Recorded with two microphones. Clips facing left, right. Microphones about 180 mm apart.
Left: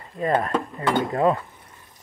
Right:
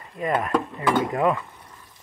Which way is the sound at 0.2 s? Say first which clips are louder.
Left 1 dB; 35° left (ahead or behind).